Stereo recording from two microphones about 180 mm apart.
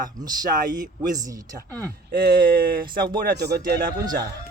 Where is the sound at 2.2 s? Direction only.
55° right (ahead or behind).